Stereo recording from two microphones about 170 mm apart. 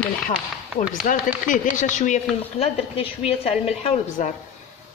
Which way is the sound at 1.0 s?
50° left (ahead or behind).